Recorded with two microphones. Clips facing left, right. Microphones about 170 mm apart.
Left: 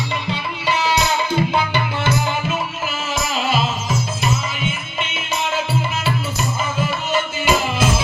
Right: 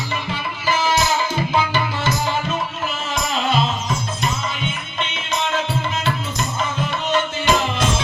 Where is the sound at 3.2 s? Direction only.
5° left (ahead or behind).